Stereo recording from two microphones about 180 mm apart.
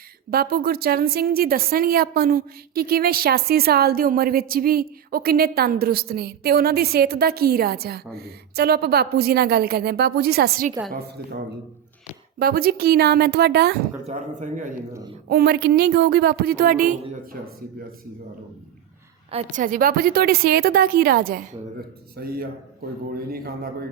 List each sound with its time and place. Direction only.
0.3 s a woman's voice: 55° right (ahead or behind)
12.4 s a woman's voice: 55° right (ahead or behind)
14.1 s speech: 45° right (ahead or behind)
15.3 s a woman's voice: 60° right (ahead or behind)
19.3 s a woman's voice: 35° right (ahead or behind)
19.6 s a woman's voice: 50° right (ahead or behind)